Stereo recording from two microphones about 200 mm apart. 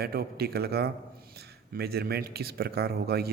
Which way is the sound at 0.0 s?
50° right (ahead or behind).